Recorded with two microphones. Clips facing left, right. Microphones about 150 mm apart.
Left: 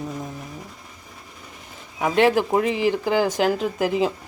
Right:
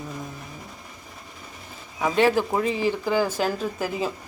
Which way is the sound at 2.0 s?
15° left (ahead or behind).